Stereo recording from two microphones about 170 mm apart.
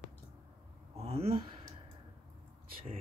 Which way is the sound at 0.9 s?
35° right (ahead or behind).